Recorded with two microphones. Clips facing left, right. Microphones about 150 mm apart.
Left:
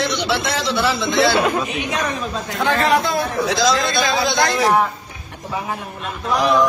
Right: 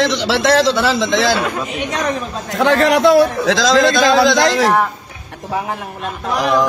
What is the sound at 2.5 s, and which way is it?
A man's voice, 80° right.